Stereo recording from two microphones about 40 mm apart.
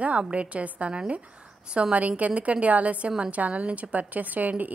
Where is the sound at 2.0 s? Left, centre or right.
Right.